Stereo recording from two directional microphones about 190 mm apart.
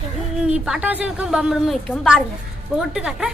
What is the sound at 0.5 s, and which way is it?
A woman's voice, 5° right (ahead or behind).